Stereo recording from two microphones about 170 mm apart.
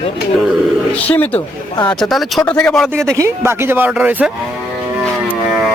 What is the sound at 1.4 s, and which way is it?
Speech, 25° left (ahead or behind).